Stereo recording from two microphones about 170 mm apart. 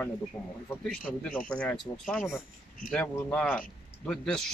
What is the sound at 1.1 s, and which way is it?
A man's voice, 10° left (ahead or behind).